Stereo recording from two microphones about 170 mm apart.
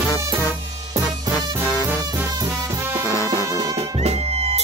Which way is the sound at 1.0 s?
15° left (ahead or behind).